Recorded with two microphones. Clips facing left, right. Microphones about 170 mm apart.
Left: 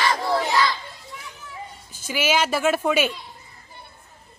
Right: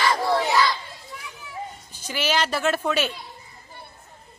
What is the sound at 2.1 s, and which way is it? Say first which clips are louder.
Speech: left 2 dB; 10° left (ahead or behind).